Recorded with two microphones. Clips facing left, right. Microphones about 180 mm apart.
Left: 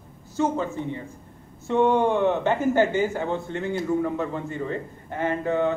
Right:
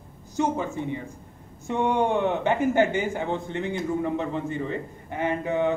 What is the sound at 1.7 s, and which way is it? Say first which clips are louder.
Speech: left 3 dB; 15° right (ahead or behind).